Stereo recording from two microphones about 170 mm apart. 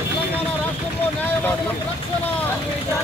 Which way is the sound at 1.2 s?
10° left (ahead or behind).